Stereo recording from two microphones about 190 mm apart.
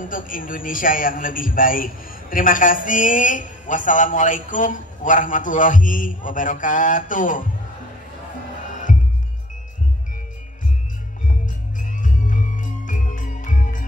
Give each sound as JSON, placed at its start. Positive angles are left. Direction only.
{"t": 0.0, "sound": "a man's voice", "side_deg": 45}
{"t": 11.9, "sound": "music", "side_deg": 45}